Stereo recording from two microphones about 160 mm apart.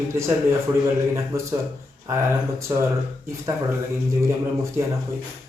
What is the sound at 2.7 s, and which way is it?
Speech, 20° right (ahead or behind).